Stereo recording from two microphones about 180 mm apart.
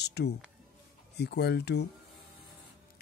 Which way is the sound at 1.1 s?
65° left (ahead or behind).